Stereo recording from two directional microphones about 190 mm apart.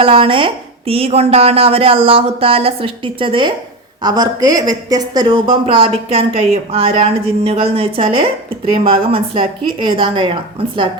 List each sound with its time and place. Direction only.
0.0 s a woman's voice: 30° right (ahead or behind)